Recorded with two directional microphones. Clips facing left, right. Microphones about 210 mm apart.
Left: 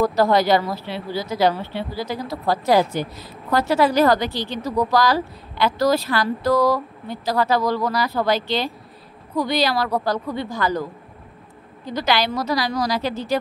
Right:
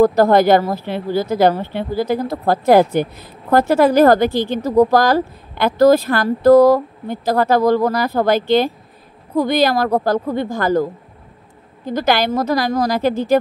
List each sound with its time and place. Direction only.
0.0 s a woman's voice: 50° right (ahead or behind)